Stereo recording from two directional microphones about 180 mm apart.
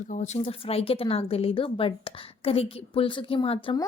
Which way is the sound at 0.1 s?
40° left (ahead or behind).